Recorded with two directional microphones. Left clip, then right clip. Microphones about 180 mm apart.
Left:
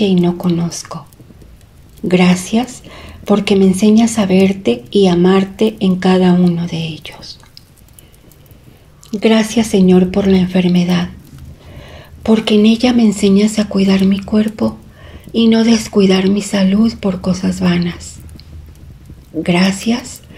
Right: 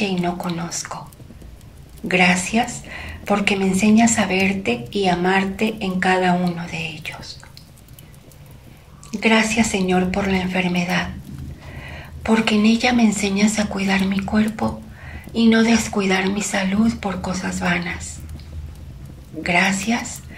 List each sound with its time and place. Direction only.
0.0 s speech: 30° left (ahead or behind)
2.0 s speech: 35° left (ahead or behind)
9.1 s speech: 30° left (ahead or behind)
19.4 s speech: 35° left (ahead or behind)